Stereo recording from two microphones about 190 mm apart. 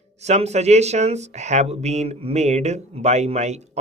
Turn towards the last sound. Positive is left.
turn(degrees=-35)  # may be behind; listen again after turning